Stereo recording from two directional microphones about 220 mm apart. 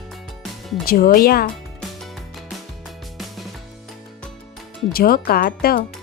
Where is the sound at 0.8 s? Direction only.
40° left (ahead or behind).